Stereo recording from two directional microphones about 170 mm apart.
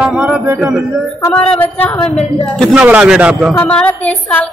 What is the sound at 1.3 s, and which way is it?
Speech, 10° left (ahead or behind).